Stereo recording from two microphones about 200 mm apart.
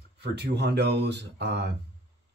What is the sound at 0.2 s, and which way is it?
Speech, 55° right (ahead or behind).